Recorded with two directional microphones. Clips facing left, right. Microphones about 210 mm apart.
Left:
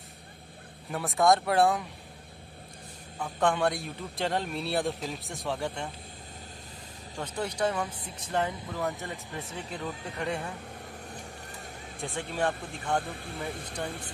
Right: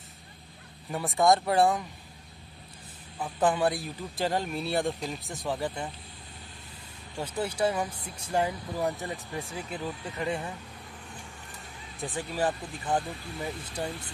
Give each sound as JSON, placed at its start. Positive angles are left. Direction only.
{"t": 0.9, "sound": "speech", "side_deg": 0}
{"t": 3.2, "sound": "speech", "side_deg": -5}
{"t": 7.2, "sound": "speech", "side_deg": -5}
{"t": 11.1, "sound": "vehicle", "side_deg": 40}
{"t": 12.0, "sound": "speech", "side_deg": -5}